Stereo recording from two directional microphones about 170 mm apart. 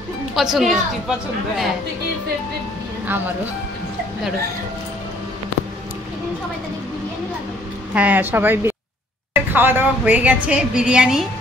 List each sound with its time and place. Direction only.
0.4 s a woman's voice: centre (ahead or behind)
7.9 s a woman's voice: 10° right (ahead or behind)